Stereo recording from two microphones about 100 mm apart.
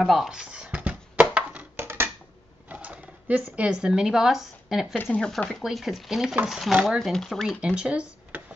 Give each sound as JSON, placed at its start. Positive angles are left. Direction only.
{"t": 0.0, "sound": "music", "side_deg": 0}
{"t": 2.7, "sound": "speech", "side_deg": -15}
{"t": 4.9, "sound": "speech", "side_deg": 20}
{"t": 5.2, "sound": "speech", "side_deg": 5}
{"t": 7.0, "sound": "speech", "side_deg": 5}
{"t": 7.6, "sound": "speech", "side_deg": -10}